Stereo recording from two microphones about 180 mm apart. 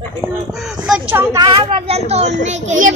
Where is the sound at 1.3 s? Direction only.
25° right (ahead or behind); by 2.9 s 40° right (ahead or behind).